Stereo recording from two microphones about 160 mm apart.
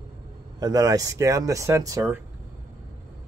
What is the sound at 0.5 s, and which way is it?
Speech, 25° right (ahead or behind).